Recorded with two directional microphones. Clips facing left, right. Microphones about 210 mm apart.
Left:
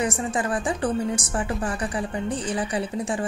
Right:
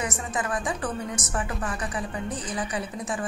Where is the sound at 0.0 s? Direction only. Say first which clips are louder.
Left 5 dB; 30° left (ahead or behind).